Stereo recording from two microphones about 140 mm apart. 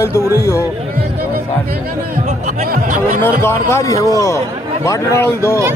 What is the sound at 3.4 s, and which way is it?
A man's voice, 20° left (ahead or behind).